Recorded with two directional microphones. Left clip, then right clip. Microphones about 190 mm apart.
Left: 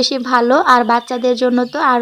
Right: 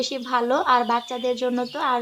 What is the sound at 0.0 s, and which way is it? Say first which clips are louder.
Speech: left 9 dB; 35° left (ahead or behind).